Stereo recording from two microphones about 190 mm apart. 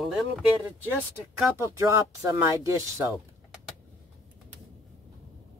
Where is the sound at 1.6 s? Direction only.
15° right (ahead or behind).